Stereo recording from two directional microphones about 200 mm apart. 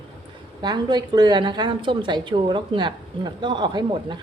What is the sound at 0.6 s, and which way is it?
A woman's voice, 20° right (ahead or behind).